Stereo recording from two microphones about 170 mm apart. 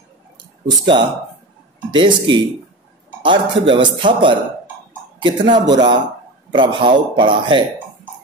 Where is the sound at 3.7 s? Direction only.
30° right (ahead or behind).